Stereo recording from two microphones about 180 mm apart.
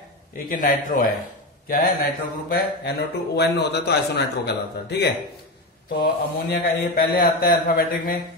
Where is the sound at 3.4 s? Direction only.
65° left (ahead or behind).